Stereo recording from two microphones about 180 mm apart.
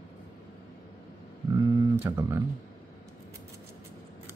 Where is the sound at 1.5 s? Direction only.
25° right (ahead or behind).